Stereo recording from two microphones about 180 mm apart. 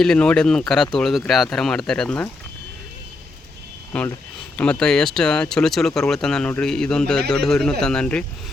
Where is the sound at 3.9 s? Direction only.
5° left (ahead or behind).